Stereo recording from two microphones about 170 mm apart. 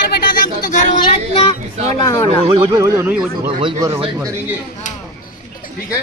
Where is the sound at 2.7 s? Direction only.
15° right (ahead or behind).